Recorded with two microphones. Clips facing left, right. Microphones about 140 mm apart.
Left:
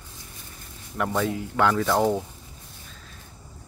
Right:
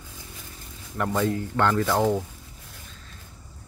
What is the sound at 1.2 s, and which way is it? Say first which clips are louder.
Speech: even; 5° left (ahead or behind).